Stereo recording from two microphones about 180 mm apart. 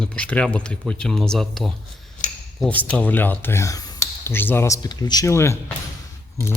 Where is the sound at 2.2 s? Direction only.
45° left (ahead or behind).